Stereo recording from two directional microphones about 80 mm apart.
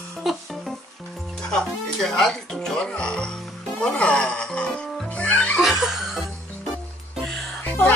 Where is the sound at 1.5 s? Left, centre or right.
Centre.